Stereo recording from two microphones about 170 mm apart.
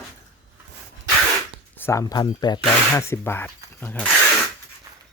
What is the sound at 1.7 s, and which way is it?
Speech, 15° left (ahead or behind).